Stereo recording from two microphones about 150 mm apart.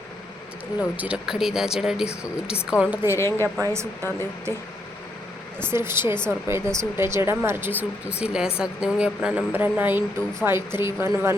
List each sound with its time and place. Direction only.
0.8 s speech: 10° right (ahead or behind)
3.2 s a woman's voice: 15° left (ahead or behind)
3.6 s speech: 20° right (ahead or behind)
5.5 s speech: 15° right (ahead or behind)